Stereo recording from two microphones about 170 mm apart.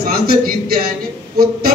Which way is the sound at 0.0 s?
60° right (ahead or behind).